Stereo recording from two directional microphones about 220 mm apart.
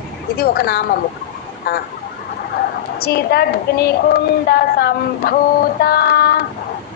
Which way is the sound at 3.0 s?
45° left (ahead or behind).